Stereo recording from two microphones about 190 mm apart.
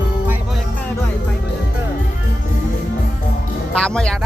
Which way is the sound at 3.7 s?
5° left (ahead or behind).